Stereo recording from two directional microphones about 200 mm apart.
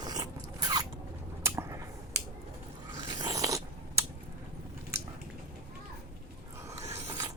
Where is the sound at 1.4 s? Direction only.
15° right (ahead or behind).